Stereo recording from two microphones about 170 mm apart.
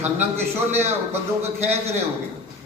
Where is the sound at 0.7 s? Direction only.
40° right (ahead or behind).